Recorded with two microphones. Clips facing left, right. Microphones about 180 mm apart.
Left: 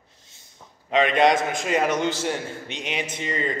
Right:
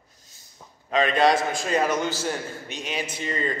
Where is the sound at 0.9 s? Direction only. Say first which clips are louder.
Left 1 dB; 20° left (ahead or behind).